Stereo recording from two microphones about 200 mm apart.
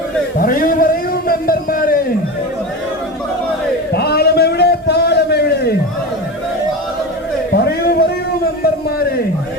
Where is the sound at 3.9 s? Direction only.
55° left (ahead or behind).